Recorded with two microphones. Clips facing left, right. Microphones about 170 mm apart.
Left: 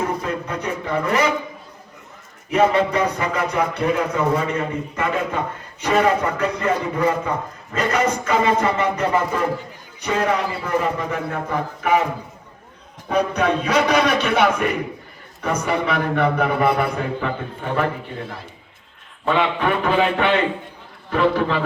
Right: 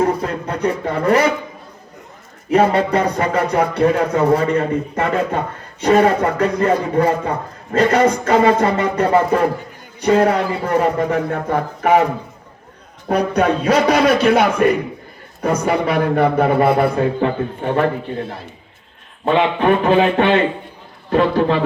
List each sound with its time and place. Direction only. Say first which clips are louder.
0.0 s speech: right 6 dB; 35° right (ahead or behind)
2.5 s a man's voice: right 3 dB; 35° right (ahead or behind)
13.1 s a man's voice: right 3 dB; 40° right (ahead or behind)
19.2 s a man's voice: right 4 dB; 30° right (ahead or behind)